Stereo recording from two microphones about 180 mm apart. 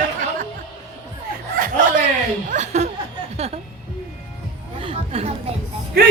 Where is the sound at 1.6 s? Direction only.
45° right (ahead or behind).